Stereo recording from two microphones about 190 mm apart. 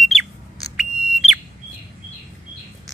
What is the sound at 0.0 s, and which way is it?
Bird, centre (ahead or behind).